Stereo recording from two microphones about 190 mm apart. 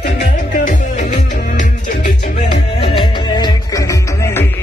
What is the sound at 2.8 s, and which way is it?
Music, 25° left (ahead or behind).